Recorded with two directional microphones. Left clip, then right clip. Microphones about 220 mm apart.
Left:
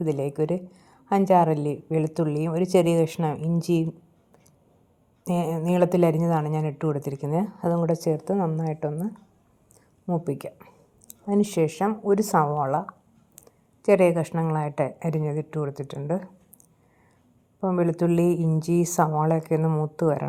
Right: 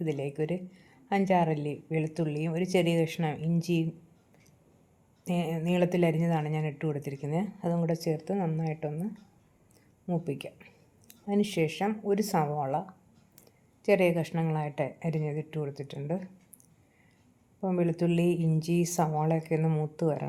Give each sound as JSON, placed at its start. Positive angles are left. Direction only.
{"t": 0.0, "sound": "a woman's voice", "side_deg": 20}
{"t": 5.2, "sound": "speech", "side_deg": 20}
{"t": 8.3, "sound": "a woman's voice", "side_deg": 5}
{"t": 11.3, "sound": "a woman's voice", "side_deg": 20}
{"t": 13.4, "sound": "a sound", "side_deg": 20}
{"t": 14.5, "sound": "a woman's voice", "side_deg": 20}
{"t": 15.5, "sound": "a woman's voice", "side_deg": 20}
{"t": 16.0, "sound": "speech", "side_deg": 5}
{"t": 17.6, "sound": "speech", "side_deg": 5}
{"t": 18.6, "sound": "a woman's voice", "side_deg": 20}
{"t": 19.5, "sound": "speech", "side_deg": 5}